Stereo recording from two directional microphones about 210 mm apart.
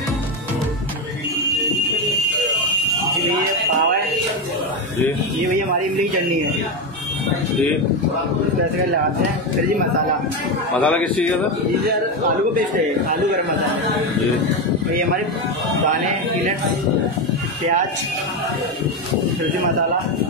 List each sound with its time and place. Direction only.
10.8 s a man's voice: 5° left (ahead or behind)
12.5 s a man's voice: 40° right (ahead or behind)